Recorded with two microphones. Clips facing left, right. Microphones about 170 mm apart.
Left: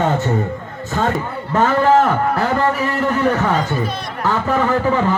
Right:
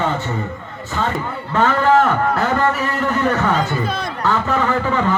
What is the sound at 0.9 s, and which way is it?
Speech, 50° left (ahead or behind).